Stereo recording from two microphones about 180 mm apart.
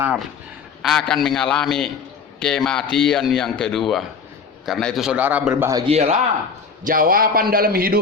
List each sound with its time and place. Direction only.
0.0 s speech: 5° right (ahead or behind)
5.8 s speech: 35° right (ahead or behind)
6.8 s a man's voice: 50° right (ahead or behind)